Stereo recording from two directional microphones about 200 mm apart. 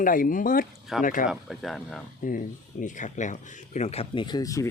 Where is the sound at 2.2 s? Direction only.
40° left (ahead or behind).